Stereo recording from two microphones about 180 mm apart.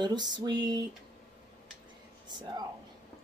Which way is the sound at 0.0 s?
25° right (ahead or behind).